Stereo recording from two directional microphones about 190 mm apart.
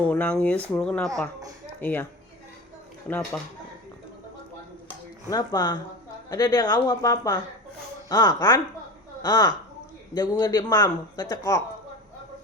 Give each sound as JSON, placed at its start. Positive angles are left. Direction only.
{"t": 0.1, "sound": "speech", "side_deg": 10}
{"t": 3.3, "sound": "speech", "side_deg": 10}
{"t": 5.3, "sound": "a man's voice", "side_deg": 20}